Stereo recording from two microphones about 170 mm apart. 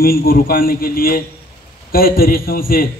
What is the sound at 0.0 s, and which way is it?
A man's voice, 60° left (ahead or behind).